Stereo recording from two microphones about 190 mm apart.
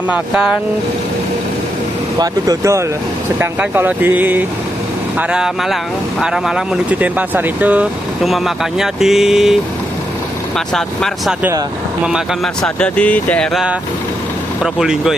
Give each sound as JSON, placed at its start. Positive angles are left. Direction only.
{"t": 0.1, "sound": "speech", "side_deg": -5}
{"t": 2.1, "sound": "speech", "side_deg": -20}
{"t": 10.7, "sound": "speech", "side_deg": 0}
{"t": 12.6, "sound": "speech", "side_deg": 5}